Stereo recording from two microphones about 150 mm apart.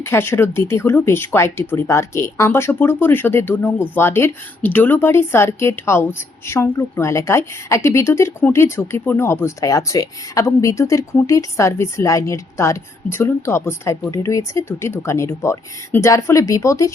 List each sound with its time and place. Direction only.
0.0 s speech: 15° left (ahead or behind)